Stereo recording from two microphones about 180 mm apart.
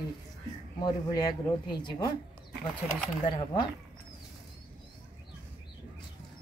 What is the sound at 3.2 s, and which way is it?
Speech, 25° left (ahead or behind).